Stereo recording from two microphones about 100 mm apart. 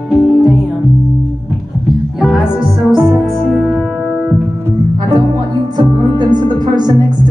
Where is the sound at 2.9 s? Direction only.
Centre (ahead or behind).